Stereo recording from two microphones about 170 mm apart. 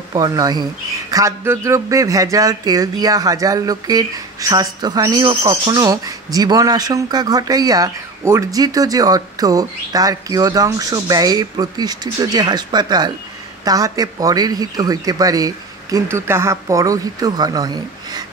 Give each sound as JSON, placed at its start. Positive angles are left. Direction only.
{"t": 0.1, "sound": "speech", "side_deg": -20}